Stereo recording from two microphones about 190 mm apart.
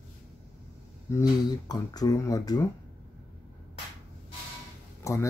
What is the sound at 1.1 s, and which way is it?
Speech, 15° left (ahead or behind).